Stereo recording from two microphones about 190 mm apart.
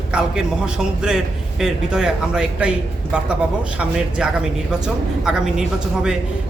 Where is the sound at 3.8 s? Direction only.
5° right (ahead or behind).